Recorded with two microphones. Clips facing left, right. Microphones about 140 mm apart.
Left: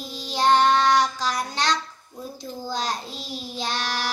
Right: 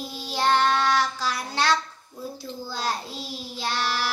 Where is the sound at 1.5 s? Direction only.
15° left (ahead or behind).